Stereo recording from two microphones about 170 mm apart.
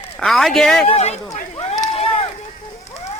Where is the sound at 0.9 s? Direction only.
40° left (ahead or behind).